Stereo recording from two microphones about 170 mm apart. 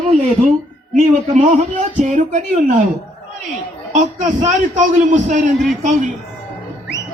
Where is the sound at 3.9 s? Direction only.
45° right (ahead or behind).